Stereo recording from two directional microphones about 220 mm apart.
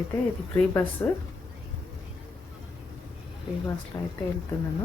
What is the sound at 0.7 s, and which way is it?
Speech, 10° left (ahead or behind).